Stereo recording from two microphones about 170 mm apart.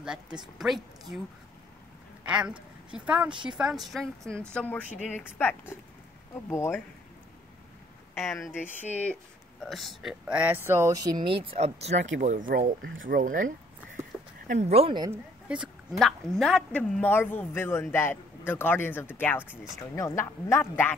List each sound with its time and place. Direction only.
0.0 s speech: 5° right (ahead or behind)
2.2 s a woman's voice: 5° right (ahead or behind); by 6.8 s 15° left (ahead or behind)
9.0 s speech: 5° left (ahead or behind); by 12.0 s 35° right (ahead or behind)
12.2 s speech: 50° right (ahead or behind)
12.8 s speech: 90° right
13.2 s speech: 50° right (ahead or behind)
14.5 s speech: 40° right (ahead or behind)
15.0 s a woman's voice: 5° right (ahead or behind); by 20.9 s 15° left (ahead or behind)